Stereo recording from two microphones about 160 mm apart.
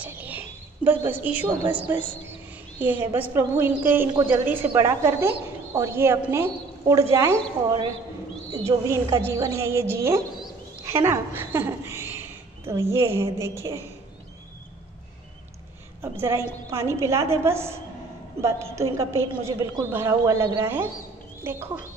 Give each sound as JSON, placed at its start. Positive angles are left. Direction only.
{"t": 0.0, "sound": "a sound", "side_deg": -10}
{"t": 1.7, "sound": "a woman's voice", "side_deg": -10}
{"t": 8.5, "sound": "speech", "side_deg": -20}
{"t": 11.1, "sound": "a woman's voice", "side_deg": -15}
{"t": 16.0, "sound": "a woman's voice", "side_deg": -15}